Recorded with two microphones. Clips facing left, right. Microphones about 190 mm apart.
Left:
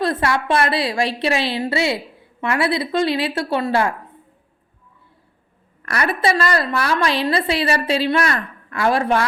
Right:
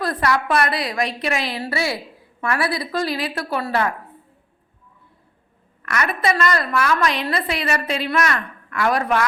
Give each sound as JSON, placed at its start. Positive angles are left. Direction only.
{"t": 0.0, "sound": "a woman's voice", "side_deg": 25}
{"t": 5.8, "sound": "a woman's voice", "side_deg": 35}